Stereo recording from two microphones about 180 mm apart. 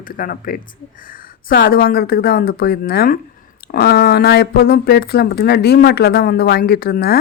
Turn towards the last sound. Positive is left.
turn(degrees=60)  # may be behind; listen again after turning